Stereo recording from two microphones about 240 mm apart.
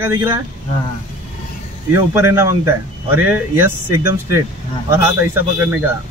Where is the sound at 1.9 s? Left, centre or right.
Centre.